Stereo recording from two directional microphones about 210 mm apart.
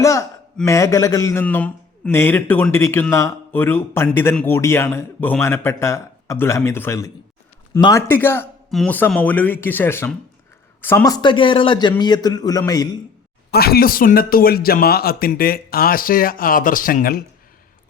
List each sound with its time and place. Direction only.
0.0 s a sound: 15° left (ahead or behind)
0.6 s a man's voice: 15° left (ahead or behind)
13.5 s a man's voice: 45° left (ahead or behind)